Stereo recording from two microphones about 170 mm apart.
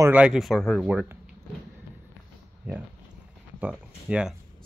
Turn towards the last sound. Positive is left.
turn(degrees=-5)  # may be behind; listen again after turning